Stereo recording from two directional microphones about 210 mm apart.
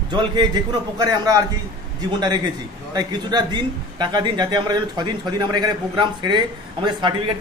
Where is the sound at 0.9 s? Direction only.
15° right (ahead or behind).